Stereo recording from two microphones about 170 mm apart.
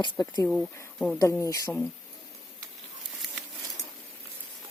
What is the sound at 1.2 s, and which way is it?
Speech, 20° left (ahead or behind).